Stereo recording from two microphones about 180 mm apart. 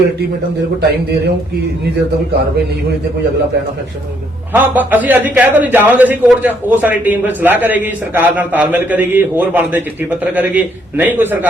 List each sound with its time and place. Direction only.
4.5 s a man's voice: 10° right (ahead or behind)